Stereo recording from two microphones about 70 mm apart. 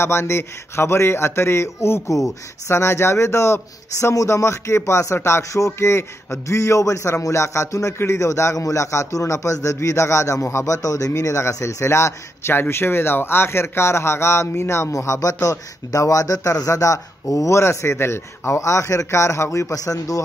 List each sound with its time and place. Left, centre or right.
0.0 s a man's voice: left
19.7 s speech: left